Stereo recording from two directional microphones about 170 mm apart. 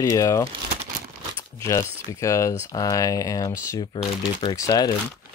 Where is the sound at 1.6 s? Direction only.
20° left (ahead or behind).